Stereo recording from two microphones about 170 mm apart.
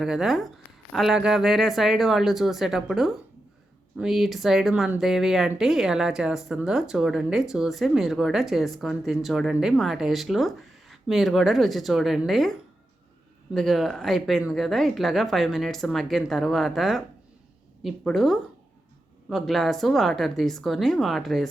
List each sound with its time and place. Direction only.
0.0 s speech: 5° right (ahead or behind)